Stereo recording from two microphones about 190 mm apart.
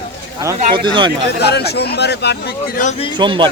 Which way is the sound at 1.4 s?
60° left (ahead or behind).